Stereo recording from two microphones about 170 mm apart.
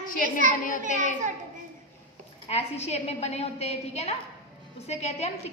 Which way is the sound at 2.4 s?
35° left (ahead or behind).